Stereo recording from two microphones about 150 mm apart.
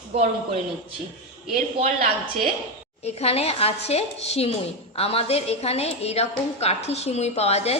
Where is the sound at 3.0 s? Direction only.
45° left (ahead or behind).